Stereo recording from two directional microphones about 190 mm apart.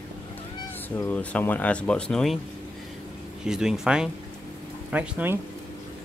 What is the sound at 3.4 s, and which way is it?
Speech, 5° right (ahead or behind).